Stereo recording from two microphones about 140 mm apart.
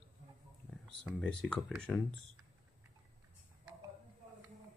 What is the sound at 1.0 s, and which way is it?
Speech, 5° left (ahead or behind).